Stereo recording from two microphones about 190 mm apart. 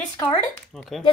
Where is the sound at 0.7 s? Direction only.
Centre (ahead or behind).